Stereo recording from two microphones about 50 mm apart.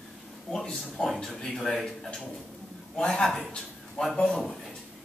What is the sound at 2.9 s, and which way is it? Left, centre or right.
A man's voice, centre.